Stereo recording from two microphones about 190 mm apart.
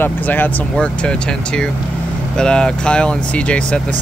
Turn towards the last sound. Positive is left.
turn(degrees=5)  # may be behind; listen again after turning